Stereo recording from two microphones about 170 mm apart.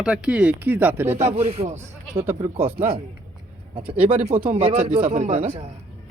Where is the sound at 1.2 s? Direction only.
40° right (ahead or behind).